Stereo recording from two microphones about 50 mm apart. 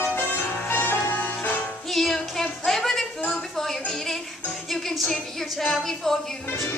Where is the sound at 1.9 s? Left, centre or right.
Centre.